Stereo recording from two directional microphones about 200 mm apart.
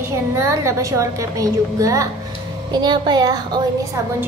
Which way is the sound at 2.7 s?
20° right (ahead or behind).